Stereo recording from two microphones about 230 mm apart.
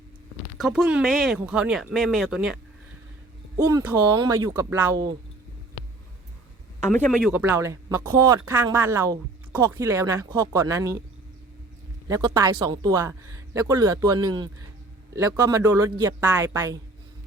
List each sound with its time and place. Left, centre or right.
0.6 s speech: centre
3.6 s speech: centre
6.9 s speech: centre
7.3 s speech: centre
12.0 s speech: centre